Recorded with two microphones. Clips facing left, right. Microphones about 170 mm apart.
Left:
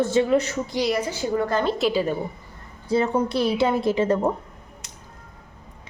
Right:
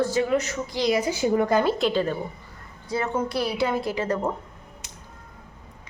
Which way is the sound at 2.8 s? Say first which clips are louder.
Left 5 dB; 30° left (ahead or behind).